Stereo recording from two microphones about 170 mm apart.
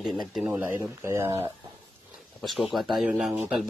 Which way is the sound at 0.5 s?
15° right (ahead or behind).